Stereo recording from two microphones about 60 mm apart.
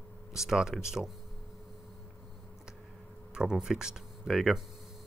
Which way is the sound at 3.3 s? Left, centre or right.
Centre.